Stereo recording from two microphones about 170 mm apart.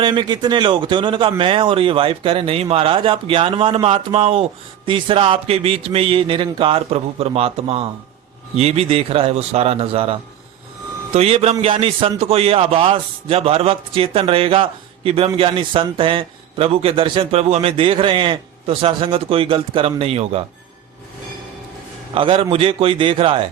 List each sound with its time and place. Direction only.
0.0 s speech: 30° right (ahead or behind)
22.1 s speech: 30° right (ahead or behind)